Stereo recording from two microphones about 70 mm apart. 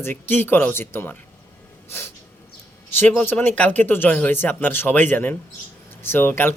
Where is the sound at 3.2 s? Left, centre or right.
Left.